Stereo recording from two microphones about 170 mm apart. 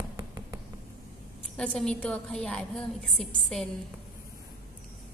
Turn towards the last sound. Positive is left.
turn(degrees=0)  # may be behind; listen again after turning